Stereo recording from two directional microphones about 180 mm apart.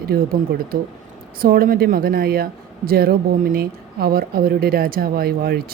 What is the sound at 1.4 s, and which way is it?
Speech, 55° right (ahead or behind).